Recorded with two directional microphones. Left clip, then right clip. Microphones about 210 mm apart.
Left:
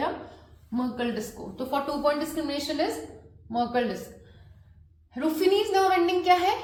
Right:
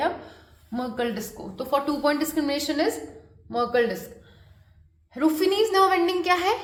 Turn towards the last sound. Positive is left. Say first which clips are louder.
# even
turn(degrees=-50)  # may be behind; listen again after turning